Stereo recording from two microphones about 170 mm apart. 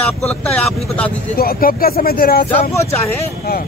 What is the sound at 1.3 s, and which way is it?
Speech, 60° left (ahead or behind).